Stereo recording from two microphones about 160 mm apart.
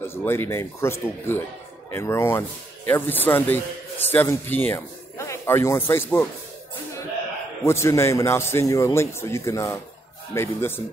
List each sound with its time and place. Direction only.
0.0 s a man's voice: 15° left (ahead or behind)
7.6 s a man's voice: 15° left (ahead or behind)